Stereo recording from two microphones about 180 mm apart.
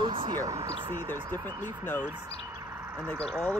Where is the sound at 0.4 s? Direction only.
20° right (ahead or behind).